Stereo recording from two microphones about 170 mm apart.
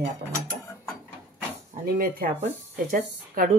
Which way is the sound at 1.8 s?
60° right (ahead or behind).